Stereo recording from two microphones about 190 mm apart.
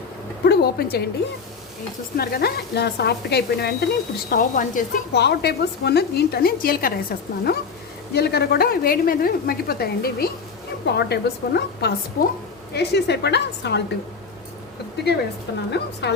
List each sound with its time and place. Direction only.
0.4 s a sound: 55° left (ahead or behind)
2.1 s speech: 55° left (ahead or behind)
4.3 s a woman's voice: 45° left (ahead or behind)
5.1 s a woman's voice: 60° left (ahead or behind)
15.0 s speech: 60° left (ahead or behind)